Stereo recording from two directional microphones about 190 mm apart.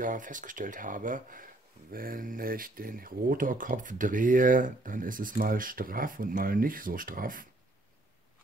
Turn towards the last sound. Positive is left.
turn(degrees=-45)  # may be behind; listen again after turning